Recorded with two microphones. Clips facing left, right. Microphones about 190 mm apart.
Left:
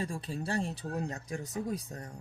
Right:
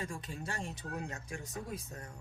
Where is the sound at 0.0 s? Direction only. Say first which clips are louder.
Left 5 dB; 35° left (ahead or behind).